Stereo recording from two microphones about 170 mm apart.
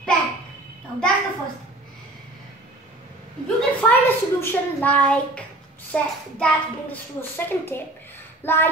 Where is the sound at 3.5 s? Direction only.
10° left (ahead or behind).